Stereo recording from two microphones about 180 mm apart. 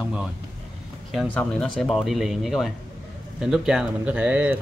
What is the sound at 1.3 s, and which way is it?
A man's voice, 5° left (ahead or behind).